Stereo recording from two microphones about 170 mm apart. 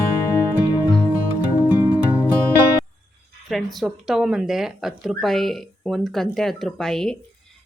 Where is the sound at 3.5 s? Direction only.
Centre (ahead or behind).